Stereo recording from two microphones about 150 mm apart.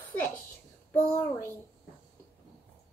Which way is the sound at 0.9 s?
15° left (ahead or behind).